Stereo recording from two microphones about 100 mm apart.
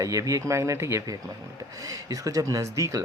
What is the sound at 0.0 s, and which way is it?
Speech, 35° right (ahead or behind).